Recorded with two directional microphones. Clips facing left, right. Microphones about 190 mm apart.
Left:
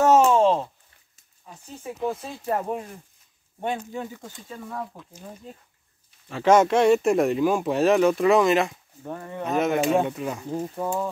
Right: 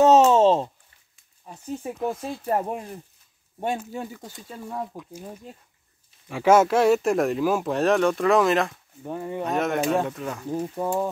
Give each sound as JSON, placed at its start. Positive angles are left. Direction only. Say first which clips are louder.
{"t": 0.0, "sound": "a sound", "louder": "right 2 dB", "side_deg": -20}
{"t": 1.4, "sound": "speech", "louder": "right 7 dB", "side_deg": -35}
{"t": 3.7, "sound": "speech", "louder": "even", "side_deg": -5}
{"t": 4.2, "sound": "speech", "louder": "even", "side_deg": -25}
{"t": 6.2, "sound": "speech", "louder": "even", "side_deg": -10}
{"t": 9.0, "sound": "speech", "louder": "right 4 dB", "side_deg": -15}
{"t": 9.4, "sound": "speech", "louder": "left 2 dB", "side_deg": 0}